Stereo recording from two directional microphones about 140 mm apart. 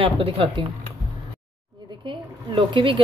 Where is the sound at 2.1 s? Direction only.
35° right (ahead or behind).